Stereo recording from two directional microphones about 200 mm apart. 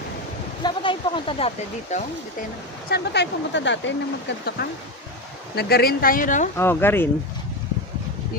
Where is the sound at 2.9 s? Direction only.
55° left (ahead or behind); by 6.5 s 40° left (ahead or behind).